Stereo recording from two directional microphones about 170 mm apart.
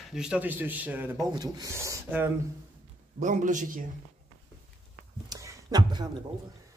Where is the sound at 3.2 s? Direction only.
45° right (ahead or behind).